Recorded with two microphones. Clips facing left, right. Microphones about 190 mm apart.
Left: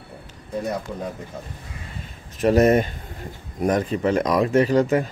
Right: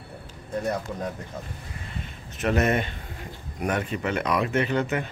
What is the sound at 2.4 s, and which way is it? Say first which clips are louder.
A man's voice: left 7 dB; 35° left (ahead or behind).